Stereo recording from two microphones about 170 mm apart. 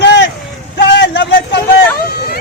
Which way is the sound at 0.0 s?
90° left.